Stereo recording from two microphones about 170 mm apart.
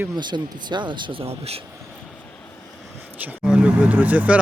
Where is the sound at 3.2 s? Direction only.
10° right (ahead or behind).